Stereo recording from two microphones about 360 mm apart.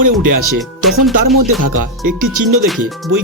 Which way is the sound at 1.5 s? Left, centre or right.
Right.